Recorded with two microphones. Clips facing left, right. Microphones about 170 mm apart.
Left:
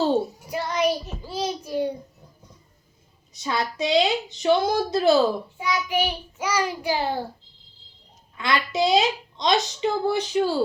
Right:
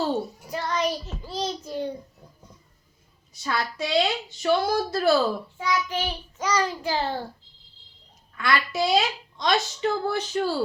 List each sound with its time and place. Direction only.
0.0 s child singing: 20° left (ahead or behind)
3.4 s speech: 20° left (ahead or behind)
8.4 s speech: 20° left (ahead or behind)